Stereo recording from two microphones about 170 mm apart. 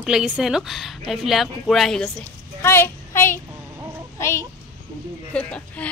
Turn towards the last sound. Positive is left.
turn(degrees=5)  # may be behind; listen again after turning